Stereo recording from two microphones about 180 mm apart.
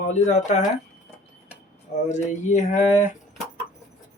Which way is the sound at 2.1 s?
40° left (ahead or behind).